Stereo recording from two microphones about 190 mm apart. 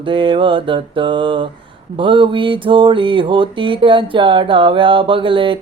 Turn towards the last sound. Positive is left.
turn(degrees=-25)  # may be behind; listen again after turning